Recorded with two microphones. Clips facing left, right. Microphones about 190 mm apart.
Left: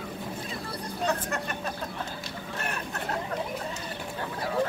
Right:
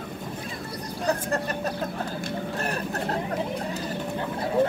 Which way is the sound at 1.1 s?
35° right (ahead or behind).